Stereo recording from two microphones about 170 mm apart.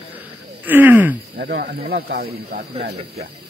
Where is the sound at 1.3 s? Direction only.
60° right (ahead or behind).